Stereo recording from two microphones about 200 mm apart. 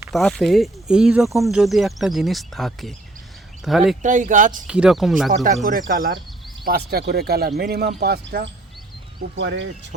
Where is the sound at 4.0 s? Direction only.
40° right (ahead or behind).